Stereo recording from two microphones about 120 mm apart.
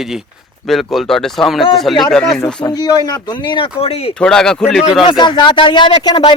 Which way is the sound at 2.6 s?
35° left (ahead or behind).